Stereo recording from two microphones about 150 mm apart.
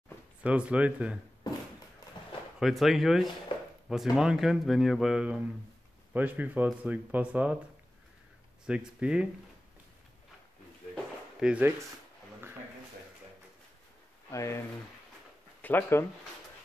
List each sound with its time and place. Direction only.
0.4 s speech: 10° right (ahead or behind)
2.6 s speech: centre (ahead or behind)
8.6 s speech: 5° right (ahead or behind)
11.3 s speech: 5° right (ahead or behind)
14.3 s speech: 20° left (ahead or behind)
15.6 s speech: 15° left (ahead or behind)